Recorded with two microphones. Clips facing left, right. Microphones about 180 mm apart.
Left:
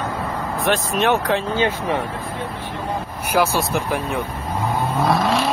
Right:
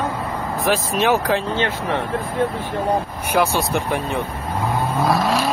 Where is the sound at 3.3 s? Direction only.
Centre (ahead or behind).